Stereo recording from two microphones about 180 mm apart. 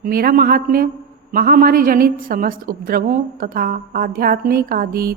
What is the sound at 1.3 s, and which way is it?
A woman's voice, 55° right (ahead or behind).